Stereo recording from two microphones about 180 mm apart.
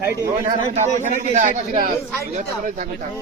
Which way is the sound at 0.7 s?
40° right (ahead or behind).